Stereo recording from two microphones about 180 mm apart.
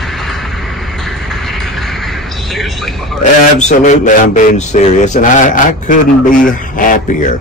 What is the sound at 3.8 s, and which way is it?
Speech, 40° left (ahead or behind).